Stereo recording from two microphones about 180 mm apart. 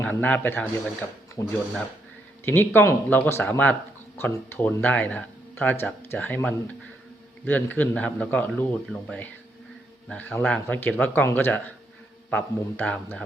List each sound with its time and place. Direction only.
0.0 s speech: 10° left (ahead or behind)